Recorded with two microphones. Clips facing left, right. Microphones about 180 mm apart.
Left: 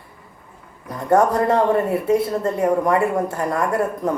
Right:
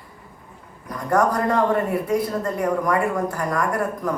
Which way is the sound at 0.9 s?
25° left (ahead or behind).